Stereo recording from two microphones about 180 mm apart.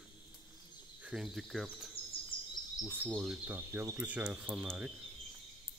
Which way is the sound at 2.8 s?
10° right (ahead or behind).